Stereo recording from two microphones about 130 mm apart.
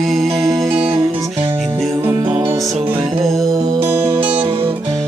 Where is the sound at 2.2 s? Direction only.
40° right (ahead or behind).